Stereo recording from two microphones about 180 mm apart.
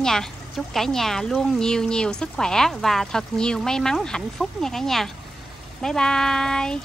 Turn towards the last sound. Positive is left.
turn(degrees=5)  # may be behind; listen again after turning